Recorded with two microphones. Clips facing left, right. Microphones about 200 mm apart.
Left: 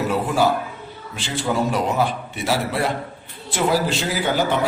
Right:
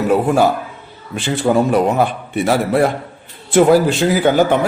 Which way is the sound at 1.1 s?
55° right (ahead or behind).